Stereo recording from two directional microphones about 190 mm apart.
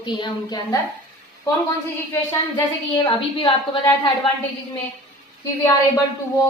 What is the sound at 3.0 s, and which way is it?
A woman's voice, 25° left (ahead or behind).